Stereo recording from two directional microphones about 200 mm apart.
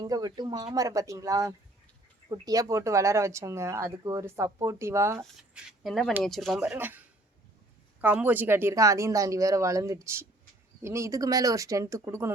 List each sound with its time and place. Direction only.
0.0 s speech: 20° right (ahead or behind)
5.2 s speech: centre (ahead or behind)
6.6 s speech: 10° right (ahead or behind)